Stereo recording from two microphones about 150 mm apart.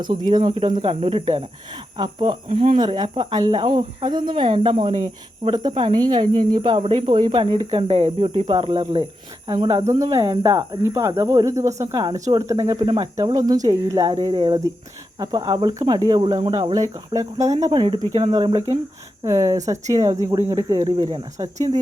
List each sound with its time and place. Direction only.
0.0 s speech: 30° right (ahead or behind)
2.8 s speech: 30° right (ahead or behind)
17.7 s speech: 35° right (ahead or behind)
18.3 s speech: 25° right (ahead or behind)
20.9 s speech: 35° right (ahead or behind)